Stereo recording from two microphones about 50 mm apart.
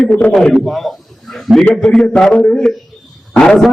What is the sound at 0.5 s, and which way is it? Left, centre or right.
A man's voice, centre.